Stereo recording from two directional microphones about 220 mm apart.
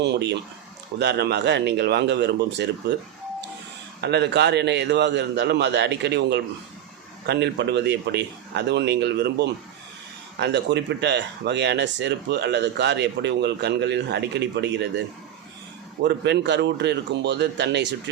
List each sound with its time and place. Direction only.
0.0 s speech: 50° right (ahead or behind)
16.0 s speech: 50° right (ahead or behind)